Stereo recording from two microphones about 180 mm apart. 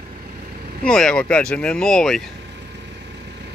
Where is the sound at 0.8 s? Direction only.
5° left (ahead or behind).